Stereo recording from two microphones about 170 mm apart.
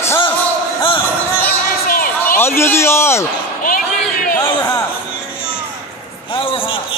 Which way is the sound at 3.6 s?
55° left (ahead or behind).